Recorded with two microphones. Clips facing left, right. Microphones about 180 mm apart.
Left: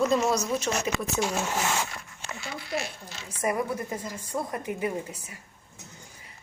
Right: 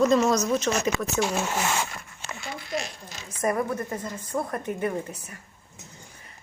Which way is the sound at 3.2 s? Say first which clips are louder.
Right 2 dB; 10° left (ahead or behind).